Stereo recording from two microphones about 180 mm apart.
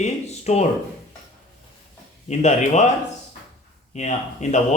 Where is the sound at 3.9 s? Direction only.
40° left (ahead or behind).